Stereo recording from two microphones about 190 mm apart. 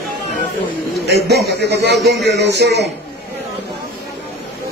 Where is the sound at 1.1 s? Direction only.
60° right (ahead or behind).